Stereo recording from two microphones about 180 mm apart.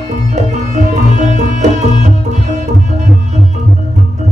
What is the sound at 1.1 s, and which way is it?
Music, 40° right (ahead or behind).